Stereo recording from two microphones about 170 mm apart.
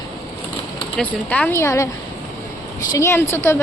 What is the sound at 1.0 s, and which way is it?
Speech, 5° left (ahead or behind).